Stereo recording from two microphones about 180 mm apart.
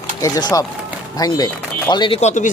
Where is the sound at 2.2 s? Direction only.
40° left (ahead or behind).